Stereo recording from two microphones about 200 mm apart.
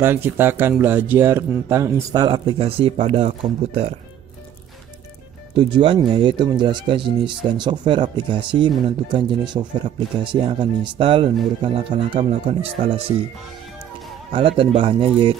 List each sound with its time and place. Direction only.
0.0 s speech: 10° right (ahead or behind); by 3.9 s 30° right (ahead or behind)
5.5 s speech: 25° right (ahead or behind)
14.6 s speech: 25° right (ahead or behind)